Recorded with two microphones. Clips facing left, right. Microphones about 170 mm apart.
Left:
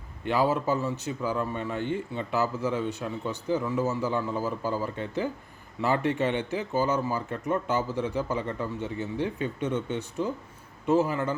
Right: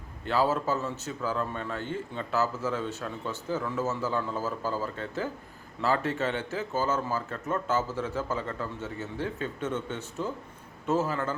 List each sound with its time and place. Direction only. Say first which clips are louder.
0.3 s speech: left 2 dB; 15° left (ahead or behind)